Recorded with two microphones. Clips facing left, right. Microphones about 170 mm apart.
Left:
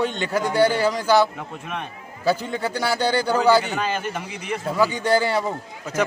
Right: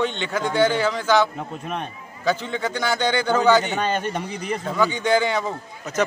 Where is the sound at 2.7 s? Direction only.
35° left (ahead or behind).